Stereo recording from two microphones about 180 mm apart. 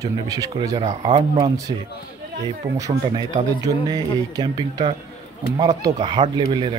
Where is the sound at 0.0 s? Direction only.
20° right (ahead or behind).